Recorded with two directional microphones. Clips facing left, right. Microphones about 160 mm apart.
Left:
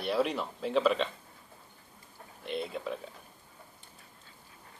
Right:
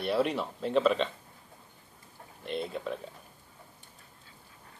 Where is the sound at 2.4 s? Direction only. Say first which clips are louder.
Right 1 dB; centre (ahead or behind).